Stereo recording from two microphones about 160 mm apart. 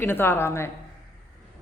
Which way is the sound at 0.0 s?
15° left (ahead or behind).